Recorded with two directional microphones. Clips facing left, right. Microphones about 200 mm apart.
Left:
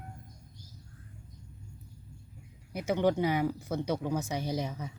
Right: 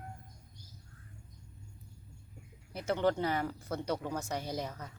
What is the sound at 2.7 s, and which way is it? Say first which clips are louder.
Speech: left 3 dB; 10° left (ahead or behind).